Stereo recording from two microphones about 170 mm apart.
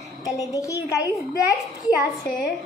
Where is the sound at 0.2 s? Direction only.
20° left (ahead or behind).